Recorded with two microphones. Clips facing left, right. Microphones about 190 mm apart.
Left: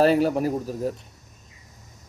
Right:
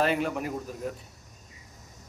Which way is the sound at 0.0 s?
35° left (ahead or behind).